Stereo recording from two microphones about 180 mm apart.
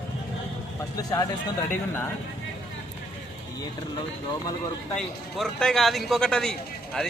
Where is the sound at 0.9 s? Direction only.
20° left (ahead or behind).